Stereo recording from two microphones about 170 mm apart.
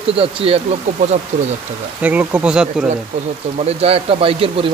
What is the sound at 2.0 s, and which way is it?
Speech, 10° right (ahead or behind).